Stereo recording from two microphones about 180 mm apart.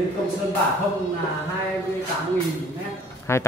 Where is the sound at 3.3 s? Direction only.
15° left (ahead or behind).